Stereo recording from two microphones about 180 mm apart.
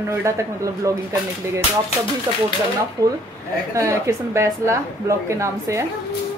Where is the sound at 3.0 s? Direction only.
20° right (ahead or behind).